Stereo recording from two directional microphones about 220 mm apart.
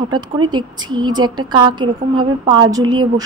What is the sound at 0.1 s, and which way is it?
A woman's voice, 20° right (ahead or behind).